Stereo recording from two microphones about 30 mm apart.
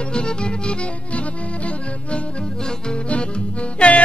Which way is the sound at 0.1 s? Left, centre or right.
Left.